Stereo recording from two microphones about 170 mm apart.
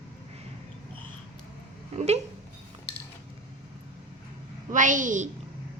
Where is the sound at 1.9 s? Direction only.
40° right (ahead or behind).